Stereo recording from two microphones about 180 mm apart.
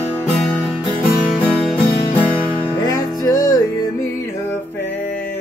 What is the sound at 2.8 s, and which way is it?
Music, 20° left (ahead or behind).